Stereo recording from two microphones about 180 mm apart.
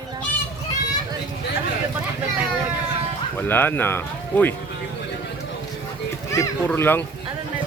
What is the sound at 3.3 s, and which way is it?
Speech, 10° left (ahead or behind).